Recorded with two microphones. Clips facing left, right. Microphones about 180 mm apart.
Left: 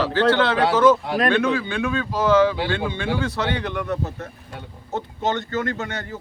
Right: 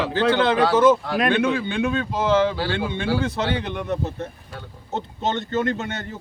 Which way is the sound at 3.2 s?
20° right (ahead or behind).